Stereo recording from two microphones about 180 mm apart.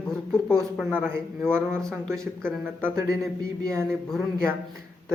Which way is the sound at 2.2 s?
5° left (ahead or behind).